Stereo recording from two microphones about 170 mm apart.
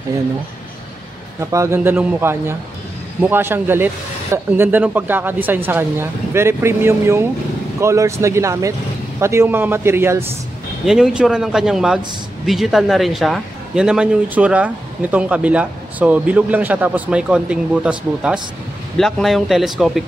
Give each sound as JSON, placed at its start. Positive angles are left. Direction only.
{"t": 1.5, "sound": "a man's voice", "side_deg": -15}
{"t": 10.9, "sound": "a man's voice", "side_deg": -5}